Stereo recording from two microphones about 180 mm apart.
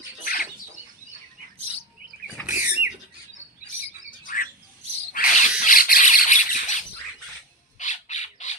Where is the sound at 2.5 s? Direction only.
10° right (ahead or behind).